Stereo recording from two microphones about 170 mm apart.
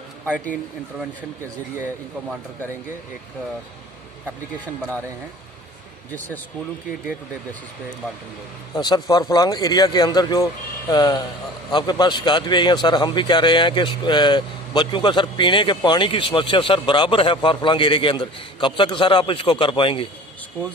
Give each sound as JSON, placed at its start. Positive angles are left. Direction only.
{"t": 6.1, "sound": "speech", "side_deg": 10}
{"t": 8.7, "sound": "a man's voice", "side_deg": 25}